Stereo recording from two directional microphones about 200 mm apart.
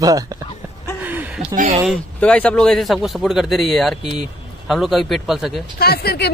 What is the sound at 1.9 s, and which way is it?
A man's voice, 5° left (ahead or behind).